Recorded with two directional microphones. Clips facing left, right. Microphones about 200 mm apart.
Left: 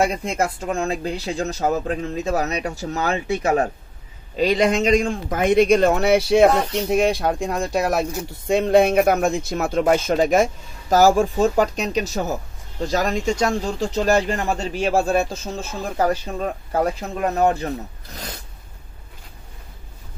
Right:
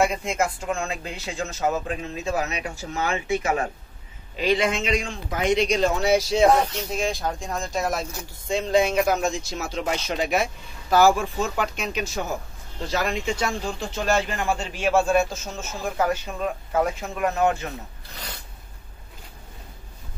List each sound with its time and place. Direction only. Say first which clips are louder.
0.0 s a man's voice: left 2 dB; 35° left (ahead or behind)